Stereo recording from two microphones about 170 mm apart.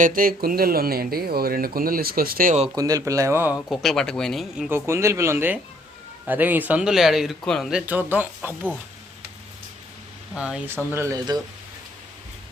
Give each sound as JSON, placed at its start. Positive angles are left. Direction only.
{"t": 0.0, "sound": "speech", "side_deg": -55}
{"t": 2.7, "sound": "speech", "side_deg": -20}
{"t": 3.7, "sound": "speech", "side_deg": 0}
{"t": 4.9, "sound": "speech", "side_deg": -15}
{"t": 10.3, "sound": "speech", "side_deg": -5}